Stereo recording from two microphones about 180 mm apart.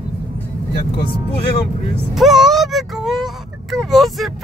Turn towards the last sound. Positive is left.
turn(degrees=0)  # may be behind; listen again after turning